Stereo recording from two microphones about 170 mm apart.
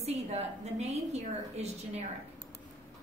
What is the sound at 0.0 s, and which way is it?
A woman's voice, 40° right (ahead or behind).